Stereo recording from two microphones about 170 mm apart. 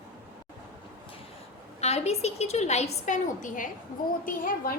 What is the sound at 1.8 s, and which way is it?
A woman's voice, 40° left (ahead or behind).